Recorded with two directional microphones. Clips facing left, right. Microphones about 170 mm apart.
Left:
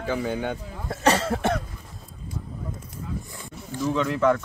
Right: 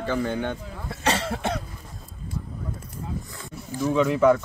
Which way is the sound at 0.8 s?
45° left (ahead or behind).